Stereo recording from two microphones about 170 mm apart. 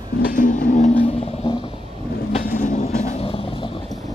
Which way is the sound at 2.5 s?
50° left (ahead or behind).